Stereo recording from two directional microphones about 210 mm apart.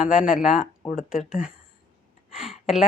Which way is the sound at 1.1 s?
35° left (ahead or behind).